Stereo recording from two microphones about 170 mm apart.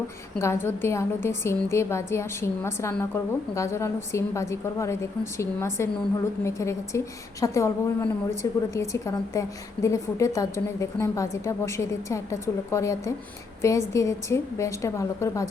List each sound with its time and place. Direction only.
0.3 s a woman's voice: 15° left (ahead or behind)